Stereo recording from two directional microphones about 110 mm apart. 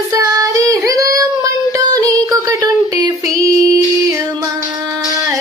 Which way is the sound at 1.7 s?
35° right (ahead or behind).